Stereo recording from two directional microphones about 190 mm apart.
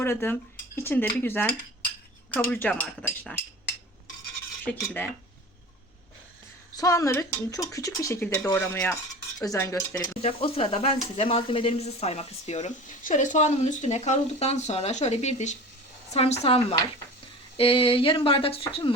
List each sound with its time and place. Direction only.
0.0 s speech: 10° left (ahead or behind)
2.5 s speech: 5° left (ahead or behind)
4.6 s speech: 10° left (ahead or behind)
6.7 s speech: 15° left (ahead or behind)
10.2 s speech: 30° left (ahead or behind)
17.6 s a sound: 30° left (ahead or behind)